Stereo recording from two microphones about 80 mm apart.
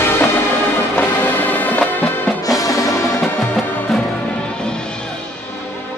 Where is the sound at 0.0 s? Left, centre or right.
Left.